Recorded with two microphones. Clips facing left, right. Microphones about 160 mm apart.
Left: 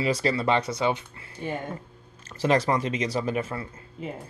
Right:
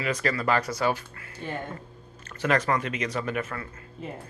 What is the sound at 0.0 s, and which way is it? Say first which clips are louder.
Speech: left 3 dB; 30° left (ahead or behind).